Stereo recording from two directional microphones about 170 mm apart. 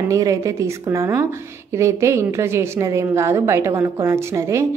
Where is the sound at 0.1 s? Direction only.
20° right (ahead or behind).